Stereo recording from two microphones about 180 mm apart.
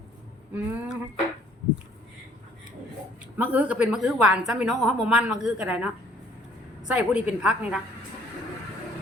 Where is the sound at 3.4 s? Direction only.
10° right (ahead or behind).